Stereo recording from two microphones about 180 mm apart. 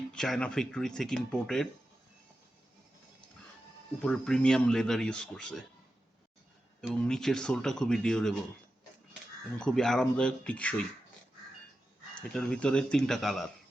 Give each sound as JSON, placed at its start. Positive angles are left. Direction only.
{"t": 0.1, "sound": "speech", "side_deg": 5}
{"t": 4.0, "sound": "speech", "side_deg": 5}
{"t": 7.0, "sound": "speech", "side_deg": 5}
{"t": 9.6, "sound": "speech", "side_deg": 5}
{"t": 12.3, "sound": "speech", "side_deg": 5}